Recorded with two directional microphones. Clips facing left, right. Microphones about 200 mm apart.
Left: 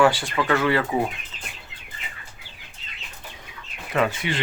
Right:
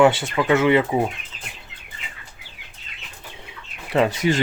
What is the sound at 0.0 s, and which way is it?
Speech, 20° right (ahead or behind).